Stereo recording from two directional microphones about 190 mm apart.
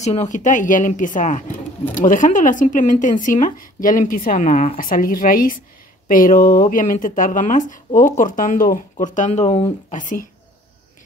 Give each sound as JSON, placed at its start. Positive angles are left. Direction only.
{"t": 0.0, "sound": "speech", "side_deg": 35}